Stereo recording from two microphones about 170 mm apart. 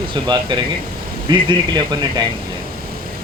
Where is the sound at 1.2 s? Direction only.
25° right (ahead or behind).